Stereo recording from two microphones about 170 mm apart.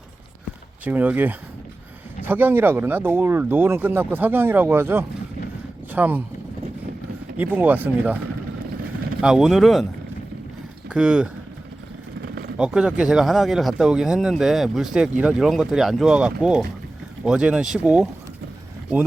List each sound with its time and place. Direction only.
0.9 s speech: 10° right (ahead or behind)
7.3 s speech: 10° right (ahead or behind)
9.2 s speech: 5° right (ahead or behind)
10.8 s speech: 5° right (ahead or behind)
12.2 s vehicle: 65° right (ahead or behind)
12.5 s speech: 5° right (ahead or behind)